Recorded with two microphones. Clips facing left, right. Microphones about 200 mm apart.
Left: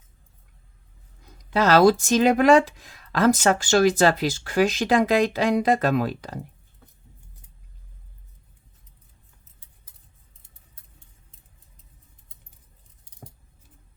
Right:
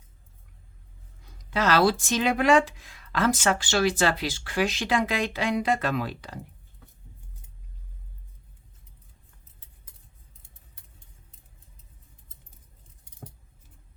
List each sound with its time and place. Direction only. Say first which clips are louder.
1.5 s speech: left 6 dB; 40° left (ahead or behind)